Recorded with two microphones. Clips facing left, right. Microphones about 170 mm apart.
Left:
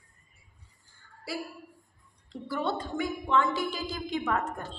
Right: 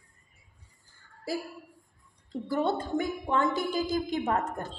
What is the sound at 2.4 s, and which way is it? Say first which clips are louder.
A woman's voice: right 3 dB; 45° right (ahead or behind).